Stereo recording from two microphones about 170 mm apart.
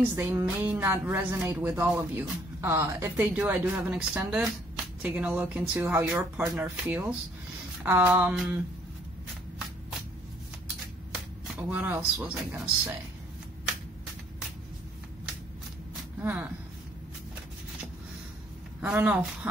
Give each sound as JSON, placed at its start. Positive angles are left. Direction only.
{"t": 0.1, "sound": "speech", "side_deg": -15}
{"t": 11.5, "sound": "speech", "side_deg": -10}
{"t": 16.2, "sound": "speech", "side_deg": -10}
{"t": 18.8, "sound": "speech", "side_deg": -10}